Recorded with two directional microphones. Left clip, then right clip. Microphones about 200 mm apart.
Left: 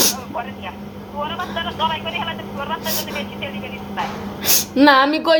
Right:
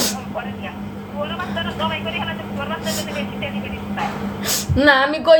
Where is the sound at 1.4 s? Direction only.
55° left (ahead or behind).